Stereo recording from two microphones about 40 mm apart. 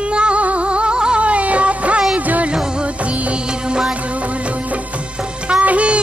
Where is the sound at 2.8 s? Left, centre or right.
Right.